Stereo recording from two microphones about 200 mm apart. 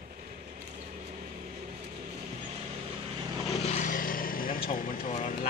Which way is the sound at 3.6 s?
40° left (ahead or behind).